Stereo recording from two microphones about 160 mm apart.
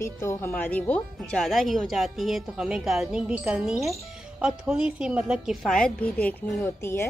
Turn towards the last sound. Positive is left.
turn(degrees=15)  # may be behind; listen again after turning